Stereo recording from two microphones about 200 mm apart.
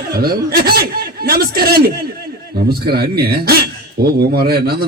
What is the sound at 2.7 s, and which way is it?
Speech, 50° right (ahead or behind).